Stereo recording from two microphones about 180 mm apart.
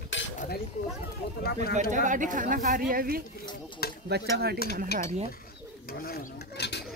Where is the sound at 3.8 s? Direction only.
60° left (ahead or behind).